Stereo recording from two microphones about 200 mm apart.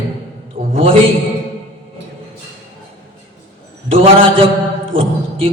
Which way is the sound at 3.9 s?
30° right (ahead or behind).